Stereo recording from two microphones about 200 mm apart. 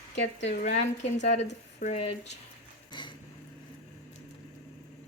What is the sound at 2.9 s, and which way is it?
Vehicle, 25° left (ahead or behind).